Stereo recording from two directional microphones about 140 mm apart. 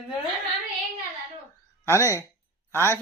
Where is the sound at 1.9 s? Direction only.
20° left (ahead or behind).